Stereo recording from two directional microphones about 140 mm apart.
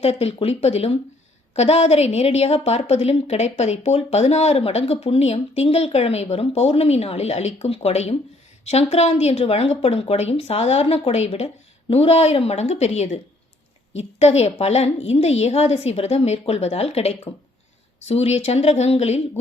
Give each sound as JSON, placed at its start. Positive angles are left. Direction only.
{"t": 0.0, "sound": "a woman's voice", "side_deg": 45}